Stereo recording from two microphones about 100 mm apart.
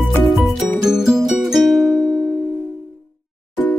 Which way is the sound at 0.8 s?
5° right (ahead or behind).